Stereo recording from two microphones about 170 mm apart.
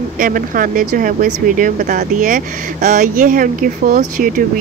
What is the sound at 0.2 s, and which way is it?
Speech, 55° right (ahead or behind).